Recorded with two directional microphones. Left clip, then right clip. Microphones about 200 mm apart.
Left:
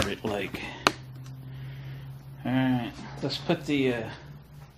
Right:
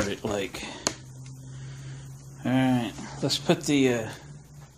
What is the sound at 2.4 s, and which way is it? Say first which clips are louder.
Speech: right 3 dB; 35° right (ahead or behind).